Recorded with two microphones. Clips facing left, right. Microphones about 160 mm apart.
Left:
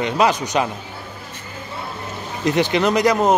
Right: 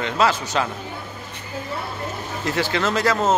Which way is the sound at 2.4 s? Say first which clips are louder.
Left 5 dB; 20° left (ahead or behind).